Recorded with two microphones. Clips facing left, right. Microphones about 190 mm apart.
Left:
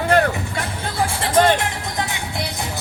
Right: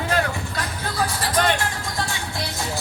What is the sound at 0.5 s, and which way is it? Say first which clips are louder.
Music: left 2 dB; 25° left (ahead or behind).